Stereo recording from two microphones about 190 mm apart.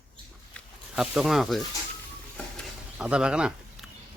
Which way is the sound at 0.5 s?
5° right (ahead or behind).